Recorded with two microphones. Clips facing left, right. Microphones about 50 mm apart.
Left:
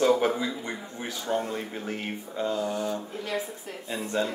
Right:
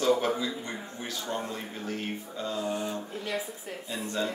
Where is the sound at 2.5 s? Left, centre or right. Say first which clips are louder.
Left 1 dB; right.